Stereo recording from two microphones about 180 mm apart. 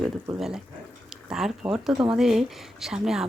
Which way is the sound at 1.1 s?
5° right (ahead or behind).